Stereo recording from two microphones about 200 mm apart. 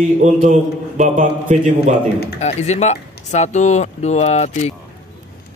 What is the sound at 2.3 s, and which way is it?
Speech, 35° left (ahead or behind).